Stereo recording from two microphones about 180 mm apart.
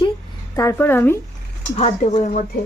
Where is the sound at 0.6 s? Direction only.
15° left (ahead or behind).